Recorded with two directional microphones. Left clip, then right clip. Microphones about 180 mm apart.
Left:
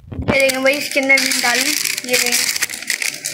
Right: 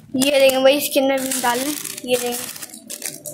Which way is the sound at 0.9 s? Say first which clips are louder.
Left 5 dB; 35° right (ahead or behind).